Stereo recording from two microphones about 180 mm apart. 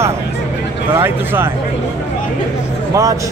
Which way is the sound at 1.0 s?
15° right (ahead or behind).